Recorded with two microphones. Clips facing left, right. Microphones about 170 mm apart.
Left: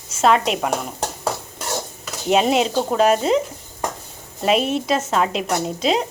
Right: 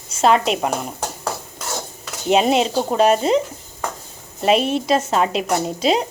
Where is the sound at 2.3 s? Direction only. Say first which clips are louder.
Right 1 dB; centre (ahead or behind).